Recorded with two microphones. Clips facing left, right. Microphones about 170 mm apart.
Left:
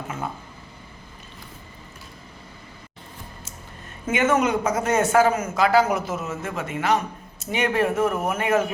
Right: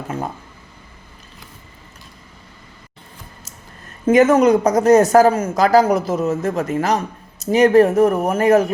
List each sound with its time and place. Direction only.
4.0 s speech: 35° right (ahead or behind)